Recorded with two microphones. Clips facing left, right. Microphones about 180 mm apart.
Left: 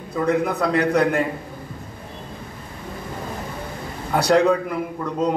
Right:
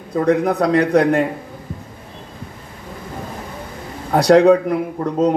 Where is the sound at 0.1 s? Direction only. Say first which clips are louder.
Right 5 dB; 35° right (ahead or behind).